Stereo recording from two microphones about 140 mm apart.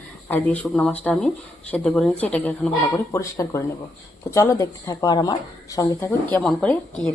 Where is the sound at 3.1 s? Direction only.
20° left (ahead or behind).